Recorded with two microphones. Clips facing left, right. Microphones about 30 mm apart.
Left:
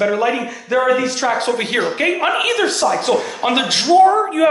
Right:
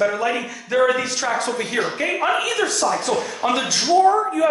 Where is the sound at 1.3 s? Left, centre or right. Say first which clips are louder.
Left 4 dB; left.